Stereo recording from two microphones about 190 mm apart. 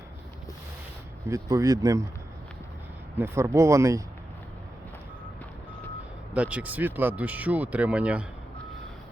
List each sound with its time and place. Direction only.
1.3 s speech: 15° right (ahead or behind)
3.2 s speech: 15° right (ahead or behind)
6.3 s speech: 5° right (ahead or behind)